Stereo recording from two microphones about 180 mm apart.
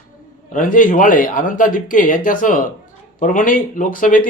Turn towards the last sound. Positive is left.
turn(degrees=50)  # may be behind; listen again after turning